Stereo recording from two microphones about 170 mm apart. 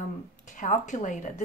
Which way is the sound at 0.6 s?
45° left (ahead or behind).